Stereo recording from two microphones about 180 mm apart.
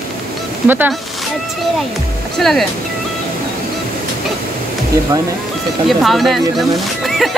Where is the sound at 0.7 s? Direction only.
10° right (ahead or behind).